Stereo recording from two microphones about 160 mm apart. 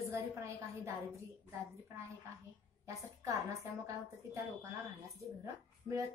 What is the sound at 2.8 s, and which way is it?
A woman's voice, 20° right (ahead or behind).